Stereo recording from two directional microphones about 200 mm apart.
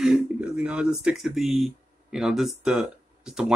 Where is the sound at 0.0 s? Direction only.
5° right (ahead or behind).